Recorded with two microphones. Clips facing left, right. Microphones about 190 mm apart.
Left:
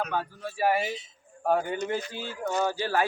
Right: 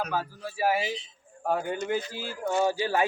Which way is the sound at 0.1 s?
5° right (ahead or behind).